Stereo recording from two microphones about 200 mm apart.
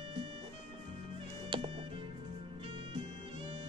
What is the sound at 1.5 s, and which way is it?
Music, 30° right (ahead or behind).